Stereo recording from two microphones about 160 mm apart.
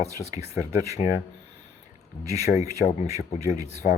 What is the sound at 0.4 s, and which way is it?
Speech, 20° right (ahead or behind).